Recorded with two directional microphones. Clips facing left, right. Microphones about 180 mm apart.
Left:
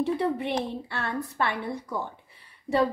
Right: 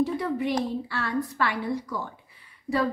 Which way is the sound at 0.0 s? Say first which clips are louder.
Even; 30° left (ahead or behind).